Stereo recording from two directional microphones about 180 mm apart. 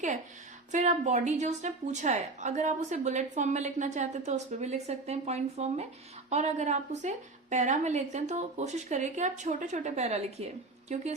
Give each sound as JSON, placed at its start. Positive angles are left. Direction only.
{"t": 0.7, "sound": "a woman's voice", "side_deg": -40}